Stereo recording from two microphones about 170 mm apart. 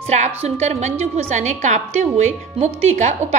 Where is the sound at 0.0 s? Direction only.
40° right (ahead or behind).